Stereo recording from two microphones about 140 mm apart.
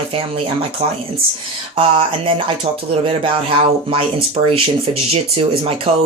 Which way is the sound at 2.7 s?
50° right (ahead or behind).